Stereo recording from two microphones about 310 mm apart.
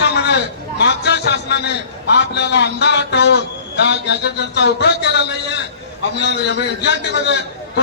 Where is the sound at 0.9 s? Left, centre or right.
Left.